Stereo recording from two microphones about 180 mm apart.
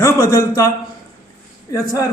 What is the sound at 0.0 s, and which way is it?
Speech, 15° left (ahead or behind).